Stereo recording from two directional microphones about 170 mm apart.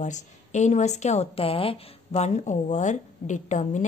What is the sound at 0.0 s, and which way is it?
A woman's voice, 45° left (ahead or behind).